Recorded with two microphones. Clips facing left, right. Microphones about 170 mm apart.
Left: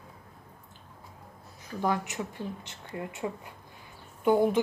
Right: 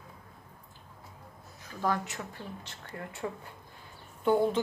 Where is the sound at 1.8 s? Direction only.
15° left (ahead or behind).